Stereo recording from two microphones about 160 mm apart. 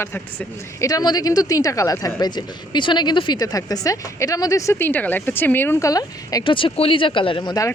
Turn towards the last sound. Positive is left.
turn(degrees=25)  # may be behind; listen again after turning